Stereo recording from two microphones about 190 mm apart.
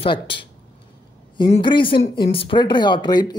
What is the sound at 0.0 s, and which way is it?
Speech, 25° left (ahead or behind).